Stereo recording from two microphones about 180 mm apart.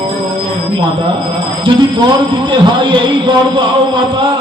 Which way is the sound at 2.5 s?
25° right (ahead or behind).